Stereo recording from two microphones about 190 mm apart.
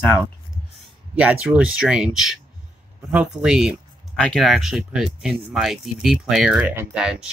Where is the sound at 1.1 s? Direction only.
5° right (ahead or behind).